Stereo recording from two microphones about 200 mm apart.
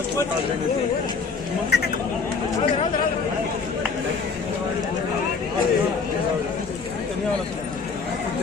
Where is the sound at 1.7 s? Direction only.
55° left (ahead or behind).